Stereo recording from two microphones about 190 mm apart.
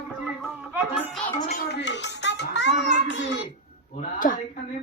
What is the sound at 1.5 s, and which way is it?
Music, 65° left (ahead or behind).